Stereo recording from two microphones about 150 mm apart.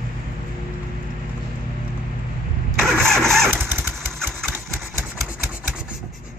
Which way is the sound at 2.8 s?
5° left (ahead or behind).